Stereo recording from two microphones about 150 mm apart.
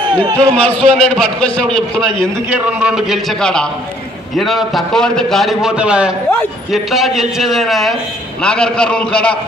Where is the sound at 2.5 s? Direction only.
10° right (ahead or behind).